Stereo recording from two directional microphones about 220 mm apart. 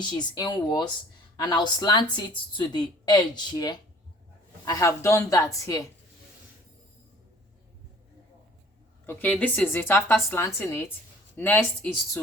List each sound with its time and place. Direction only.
0.0 s a woman's voice: 20° left (ahead or behind)
9.0 s speech: 5° left (ahead or behind)